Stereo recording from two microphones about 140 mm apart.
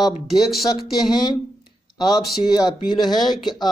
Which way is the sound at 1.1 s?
30° left (ahead or behind).